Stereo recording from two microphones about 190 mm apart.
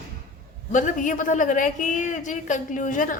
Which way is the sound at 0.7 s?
40° left (ahead or behind).